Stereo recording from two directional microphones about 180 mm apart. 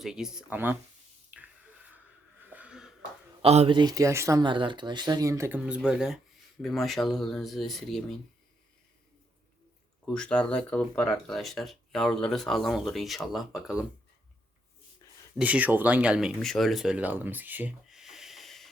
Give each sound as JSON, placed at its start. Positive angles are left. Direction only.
{"t": 0.0, "sound": "speech", "side_deg": -5}
{"t": 1.4, "sound": "a sound", "side_deg": -10}
{"t": 3.4, "sound": "speech", "side_deg": -35}
{"t": 10.1, "sound": "speech", "side_deg": 5}
{"t": 15.4, "sound": "speech", "side_deg": -10}